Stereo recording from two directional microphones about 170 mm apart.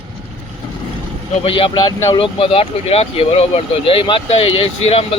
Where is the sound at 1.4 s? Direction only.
30° left (ahead or behind).